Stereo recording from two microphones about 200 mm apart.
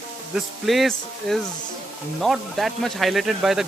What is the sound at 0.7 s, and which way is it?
A man's voice, centre (ahead or behind).